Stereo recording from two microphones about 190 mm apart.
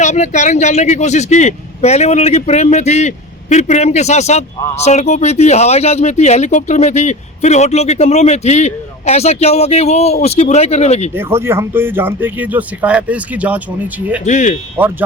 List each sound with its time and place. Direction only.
0.0 s speech: 40° left (ahead or behind)
11.1 s speech: 10° right (ahead or behind)
14.3 s speech: 40° left (ahead or behind)
14.8 s speech: 10° right (ahead or behind)